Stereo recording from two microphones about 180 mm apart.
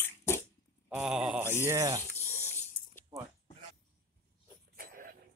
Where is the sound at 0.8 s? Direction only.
5° right (ahead or behind).